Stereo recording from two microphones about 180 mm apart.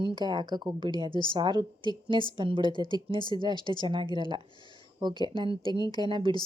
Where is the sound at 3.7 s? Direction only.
25° right (ahead or behind).